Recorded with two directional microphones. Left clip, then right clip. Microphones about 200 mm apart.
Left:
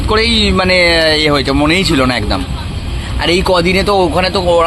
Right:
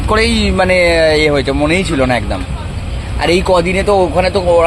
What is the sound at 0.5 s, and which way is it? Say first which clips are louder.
Speech: right 2 dB; centre (ahead or behind).